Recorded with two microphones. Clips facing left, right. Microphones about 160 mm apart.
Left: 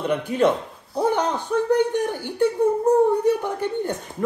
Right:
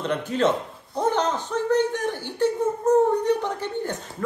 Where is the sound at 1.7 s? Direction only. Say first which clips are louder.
Left 1 dB; 10° left (ahead or behind).